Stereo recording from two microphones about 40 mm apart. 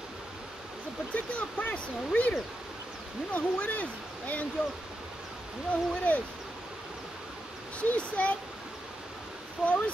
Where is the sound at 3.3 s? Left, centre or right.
Left.